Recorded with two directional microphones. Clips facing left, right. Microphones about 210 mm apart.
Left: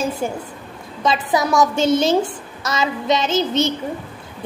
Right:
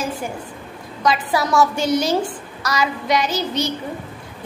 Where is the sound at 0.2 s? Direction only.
25° left (ahead or behind).